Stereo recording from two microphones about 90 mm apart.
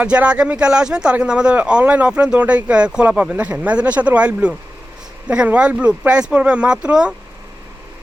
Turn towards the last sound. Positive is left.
turn(degrees=-10)  # may be behind; listen again after turning